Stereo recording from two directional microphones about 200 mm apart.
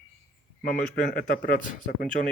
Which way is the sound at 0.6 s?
45° left (ahead or behind).